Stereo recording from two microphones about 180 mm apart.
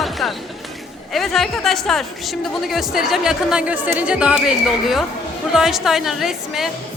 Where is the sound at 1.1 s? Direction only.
Centre (ahead or behind).